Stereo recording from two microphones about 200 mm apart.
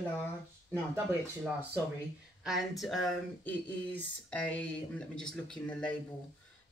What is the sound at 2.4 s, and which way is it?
Speech, centre (ahead or behind).